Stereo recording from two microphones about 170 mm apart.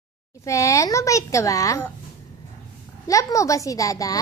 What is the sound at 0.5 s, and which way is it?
A woman's voice, 20° left (ahead or behind).